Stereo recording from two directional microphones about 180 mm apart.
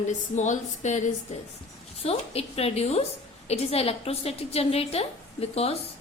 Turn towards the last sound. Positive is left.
turn(degrees=35)  # may be behind; listen again after turning